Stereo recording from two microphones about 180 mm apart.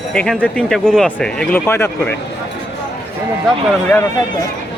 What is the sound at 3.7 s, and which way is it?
Speech, 5° left (ahead or behind).